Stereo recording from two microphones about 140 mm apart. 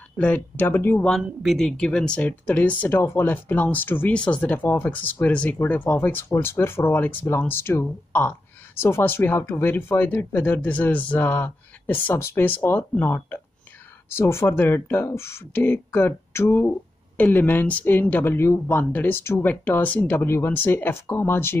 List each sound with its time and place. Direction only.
0.2 s speech: 10° left (ahead or behind)
1.1 s speech: centre (ahead or behind)